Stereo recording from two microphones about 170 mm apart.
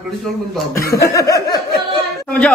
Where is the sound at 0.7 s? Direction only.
65° left (ahead or behind).